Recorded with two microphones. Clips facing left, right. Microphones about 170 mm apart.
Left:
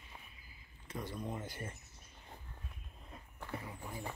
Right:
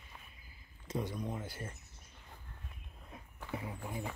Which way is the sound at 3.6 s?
20° right (ahead or behind).